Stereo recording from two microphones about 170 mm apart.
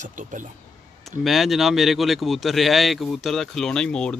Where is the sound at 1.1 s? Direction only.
Centre (ahead or behind).